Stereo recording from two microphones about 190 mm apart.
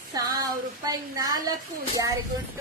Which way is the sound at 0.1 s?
20° right (ahead or behind).